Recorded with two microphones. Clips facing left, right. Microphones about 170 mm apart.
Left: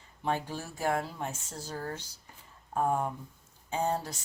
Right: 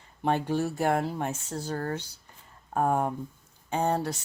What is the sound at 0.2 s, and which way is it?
Speech, 65° right (ahead or behind).